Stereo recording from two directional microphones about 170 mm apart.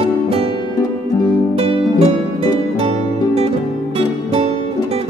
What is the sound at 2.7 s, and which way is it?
Music, 35° right (ahead or behind).